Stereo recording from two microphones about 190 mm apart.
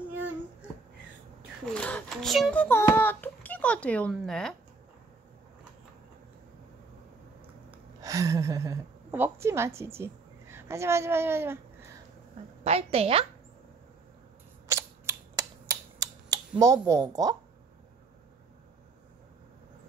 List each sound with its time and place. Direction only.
0.1 s babbling: 10° right (ahead or behind)
1.7 s speech: 5° left (ahead or behind)
8.0 s a woman's voice: 20° right (ahead or behind)
12.6 s a woman's voice: 30° right (ahead or behind)
14.7 s typing: 15° right (ahead or behind)